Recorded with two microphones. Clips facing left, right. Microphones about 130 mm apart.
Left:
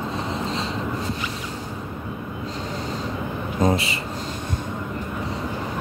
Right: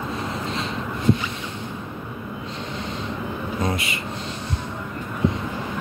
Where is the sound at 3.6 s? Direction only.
35° left (ahead or behind).